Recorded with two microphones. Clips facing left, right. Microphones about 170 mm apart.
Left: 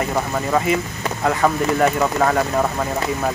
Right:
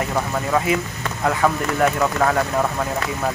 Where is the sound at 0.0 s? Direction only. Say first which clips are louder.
Left 1 dB; 5° left (ahead or behind).